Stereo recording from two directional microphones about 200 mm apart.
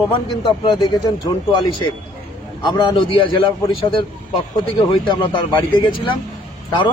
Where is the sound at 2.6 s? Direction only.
25° left (ahead or behind).